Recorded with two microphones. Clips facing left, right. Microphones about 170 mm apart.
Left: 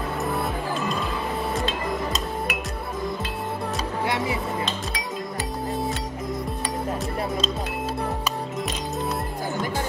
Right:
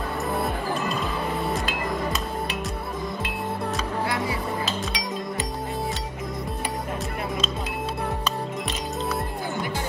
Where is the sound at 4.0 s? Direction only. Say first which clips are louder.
Left 3 dB; 20° left (ahead or behind).